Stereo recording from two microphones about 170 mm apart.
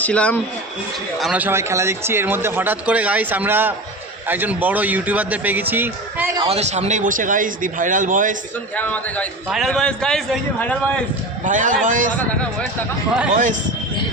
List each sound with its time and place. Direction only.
0.0 s a man's voice: 5° left (ahead or behind)
1.2 s speech: 10° right (ahead or behind)
6.5 s speech: 40° right (ahead or behind)
8.7 s a man's voice: 10° left (ahead or behind)
11.4 s speech: 50° right (ahead or behind)